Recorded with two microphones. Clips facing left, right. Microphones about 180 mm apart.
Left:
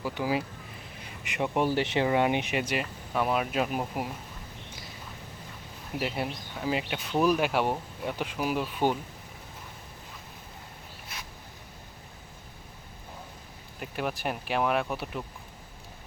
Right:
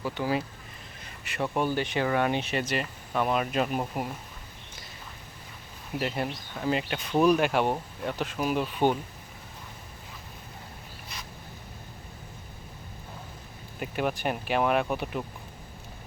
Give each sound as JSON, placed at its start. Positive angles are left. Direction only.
{"t": 0.0, "sound": "speech", "side_deg": 10}
{"t": 6.0, "sound": "speech", "side_deg": 5}
{"t": 13.7, "sound": "speech", "side_deg": 0}